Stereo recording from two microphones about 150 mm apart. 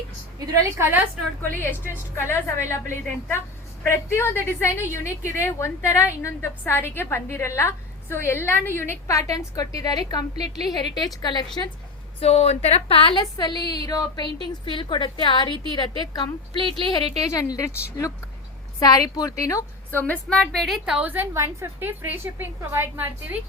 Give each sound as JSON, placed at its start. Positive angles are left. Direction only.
{"t": 0.3, "sound": "a woman's voice", "side_deg": -15}
{"t": 1.4, "sound": "a woman's voice", "side_deg": 15}
{"t": 12.2, "sound": "a woman's voice", "side_deg": 45}
{"t": 16.6, "sound": "speech", "side_deg": -35}
{"t": 17.2, "sound": "a woman's voice", "side_deg": 25}
{"t": 18.8, "sound": "a woman's voice", "side_deg": 25}